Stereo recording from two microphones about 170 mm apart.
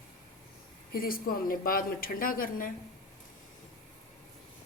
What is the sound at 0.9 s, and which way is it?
Speech, 60° left (ahead or behind).